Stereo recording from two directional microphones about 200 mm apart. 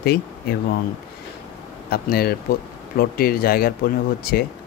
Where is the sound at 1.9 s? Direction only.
50° left (ahead or behind).